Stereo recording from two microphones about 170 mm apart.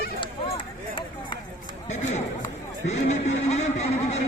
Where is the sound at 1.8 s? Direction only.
40° left (ahead or behind).